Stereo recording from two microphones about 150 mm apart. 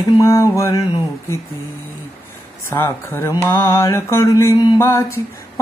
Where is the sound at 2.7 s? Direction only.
15° left (ahead or behind).